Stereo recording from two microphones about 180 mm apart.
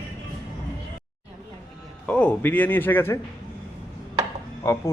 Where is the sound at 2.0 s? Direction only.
5° left (ahead or behind).